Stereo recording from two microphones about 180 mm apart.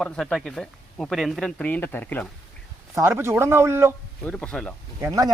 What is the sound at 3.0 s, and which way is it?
Speech, 15° right (ahead or behind).